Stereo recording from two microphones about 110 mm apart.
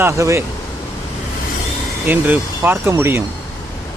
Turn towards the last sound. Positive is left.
turn(degrees=-20)  # may be behind; listen again after turning